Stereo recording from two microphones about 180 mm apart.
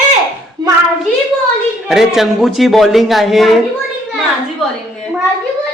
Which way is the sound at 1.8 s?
Centre (ahead or behind).